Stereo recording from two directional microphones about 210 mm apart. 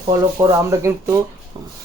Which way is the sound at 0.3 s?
15° right (ahead or behind).